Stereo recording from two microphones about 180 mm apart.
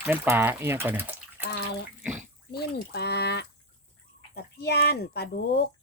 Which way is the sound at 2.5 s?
65° left (ahead or behind).